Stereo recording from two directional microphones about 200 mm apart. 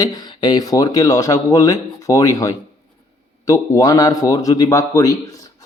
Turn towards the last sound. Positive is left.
turn(degrees=15)  # may be behind; listen again after turning